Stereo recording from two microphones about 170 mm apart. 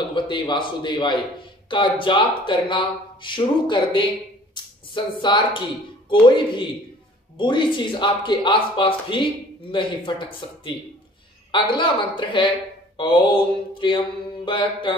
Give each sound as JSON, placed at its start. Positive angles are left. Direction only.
{"t": 0.1, "sound": "speech", "side_deg": 30}
{"t": 4.6, "sound": "a sound", "side_deg": 25}
{"t": 4.9, "sound": "speech", "side_deg": 25}